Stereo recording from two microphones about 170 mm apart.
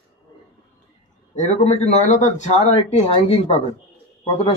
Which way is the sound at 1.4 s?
40° left (ahead or behind).